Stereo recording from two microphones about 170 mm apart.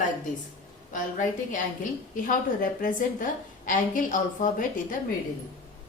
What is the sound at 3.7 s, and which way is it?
A woman's voice, 50° left (ahead or behind).